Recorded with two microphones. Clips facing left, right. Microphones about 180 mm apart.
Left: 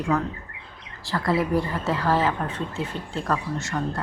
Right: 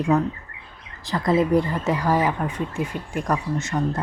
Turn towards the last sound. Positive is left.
turn(degrees=-20)  # may be behind; listen again after turning